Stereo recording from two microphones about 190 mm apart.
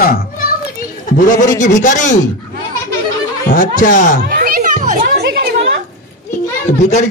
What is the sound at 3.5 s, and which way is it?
Speech, 45° left (ahead or behind).